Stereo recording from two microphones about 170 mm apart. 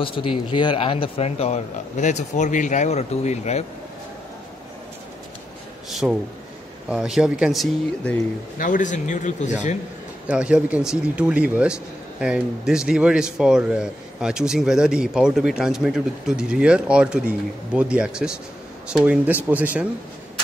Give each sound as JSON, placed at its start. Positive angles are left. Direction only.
{"t": 0.0, "sound": "a man's voice", "side_deg": 30}
{"t": 5.9, "sound": "a sound", "side_deg": 0}
{"t": 6.9, "sound": "a man's voice", "side_deg": -5}
{"t": 8.5, "sound": "speech", "side_deg": 50}
{"t": 10.3, "sound": "a man's voice", "side_deg": -5}